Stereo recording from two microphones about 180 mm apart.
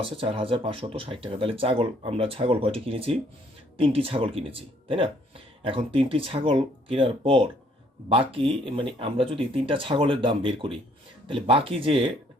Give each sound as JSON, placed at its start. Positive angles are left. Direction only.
{"t": 0.0, "sound": "speech", "side_deg": -30}